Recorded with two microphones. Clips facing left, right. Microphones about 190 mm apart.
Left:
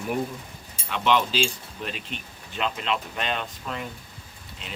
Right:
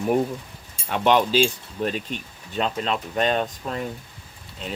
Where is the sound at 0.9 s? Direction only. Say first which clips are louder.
Right 4 dB; 45° right (ahead or behind).